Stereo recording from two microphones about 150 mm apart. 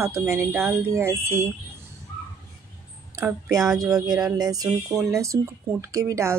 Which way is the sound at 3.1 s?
20° right (ahead or behind).